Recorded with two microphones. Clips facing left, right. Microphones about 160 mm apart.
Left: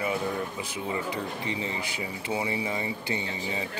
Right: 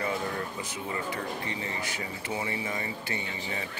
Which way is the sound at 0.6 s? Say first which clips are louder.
Left 3 dB; 15° left (ahead or behind).